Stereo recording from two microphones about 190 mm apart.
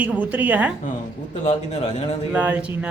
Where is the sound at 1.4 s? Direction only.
35° left (ahead or behind).